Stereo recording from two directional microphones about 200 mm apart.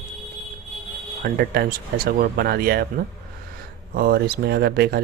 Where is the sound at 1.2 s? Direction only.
50° right (ahead or behind).